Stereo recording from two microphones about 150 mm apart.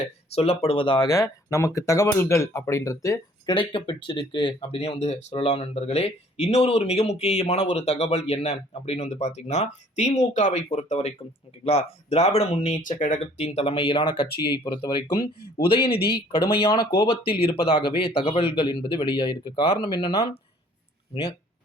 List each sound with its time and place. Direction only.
0.3 s speech: 40° left (ahead or behind); by 3.5 s 20° left (ahead or behind)
3.5 s speech: 35° left (ahead or behind)
12.7 s speech: 60° left (ahead or behind)
13.3 s speech: 45° left (ahead or behind)
14.3 s speech: 90° left
14.6 s speech: 30° left (ahead or behind)
15.9 s speech: 90° left
16.1 s speech: 35° left (ahead or behind)